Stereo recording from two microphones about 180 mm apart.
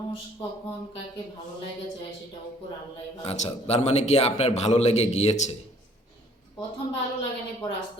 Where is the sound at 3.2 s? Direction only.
35° left (ahead or behind).